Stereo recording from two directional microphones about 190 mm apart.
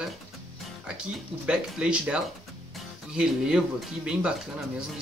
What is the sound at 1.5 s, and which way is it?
Speech, 5° right (ahead or behind).